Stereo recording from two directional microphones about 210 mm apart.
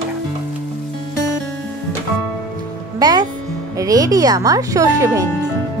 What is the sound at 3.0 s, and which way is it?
Music, 20° right (ahead or behind).